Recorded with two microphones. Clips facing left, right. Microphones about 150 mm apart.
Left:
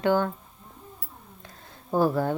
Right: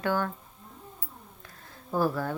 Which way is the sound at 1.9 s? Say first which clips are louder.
Left 4 dB; 25° left (ahead or behind).